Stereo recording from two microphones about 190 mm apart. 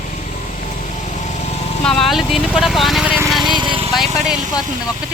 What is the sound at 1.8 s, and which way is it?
Speech, centre (ahead or behind).